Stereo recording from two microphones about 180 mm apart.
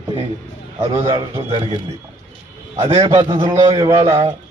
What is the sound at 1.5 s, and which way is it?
Speech, 30° right (ahead or behind).